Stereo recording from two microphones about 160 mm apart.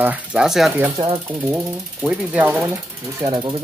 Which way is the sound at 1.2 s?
20° right (ahead or behind).